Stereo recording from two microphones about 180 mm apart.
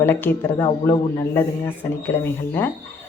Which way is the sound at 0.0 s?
10° left (ahead or behind).